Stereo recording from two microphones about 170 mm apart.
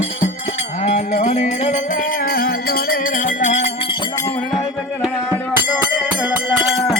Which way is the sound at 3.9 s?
25° left (ahead or behind).